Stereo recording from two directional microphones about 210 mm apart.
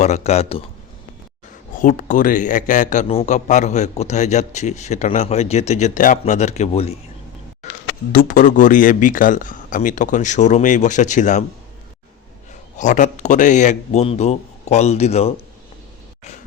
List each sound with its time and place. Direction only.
0.0 s a man's voice: 30° left (ahead or behind)
1.8 s a man's voice: 40° left (ahead or behind)
8.1 s a man's voice: 40° left (ahead or behind)
12.7 s a man's voice: 35° left (ahead or behind)